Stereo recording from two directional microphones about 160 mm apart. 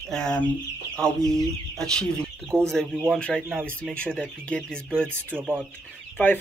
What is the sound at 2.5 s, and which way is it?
Speech, 15° right (ahead or behind).